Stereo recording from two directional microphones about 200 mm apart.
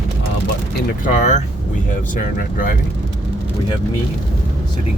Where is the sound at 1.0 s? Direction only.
35° left (ahead or behind).